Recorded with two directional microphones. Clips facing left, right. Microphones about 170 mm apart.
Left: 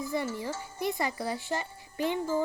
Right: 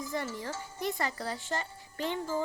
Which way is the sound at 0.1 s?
10° left (ahead or behind).